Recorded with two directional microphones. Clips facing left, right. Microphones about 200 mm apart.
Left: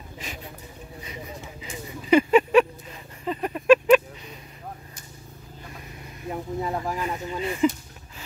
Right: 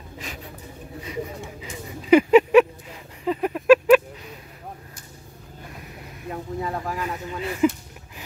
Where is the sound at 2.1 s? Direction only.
10° right (ahead or behind).